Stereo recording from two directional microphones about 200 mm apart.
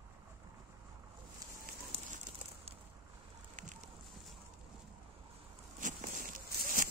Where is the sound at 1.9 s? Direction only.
35° right (ahead or behind).